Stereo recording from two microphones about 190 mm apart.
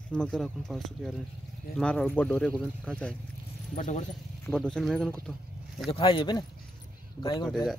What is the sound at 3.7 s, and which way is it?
Speech, 40° left (ahead or behind).